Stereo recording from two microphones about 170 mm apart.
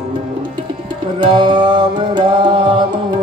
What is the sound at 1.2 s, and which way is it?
Music, 30° right (ahead or behind).